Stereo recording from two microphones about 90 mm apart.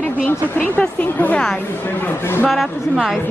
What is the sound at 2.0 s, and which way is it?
Speech, 25° left (ahead or behind).